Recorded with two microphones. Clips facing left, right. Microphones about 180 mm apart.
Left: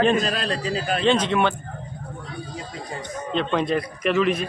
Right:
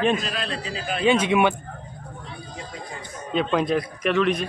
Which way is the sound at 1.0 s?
10° right (ahead or behind).